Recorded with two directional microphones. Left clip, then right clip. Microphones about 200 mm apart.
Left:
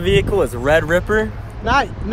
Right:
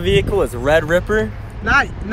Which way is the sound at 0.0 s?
20° left (ahead or behind).